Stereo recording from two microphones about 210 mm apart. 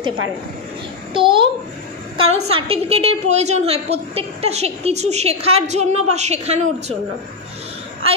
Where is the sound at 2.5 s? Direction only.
25° right (ahead or behind).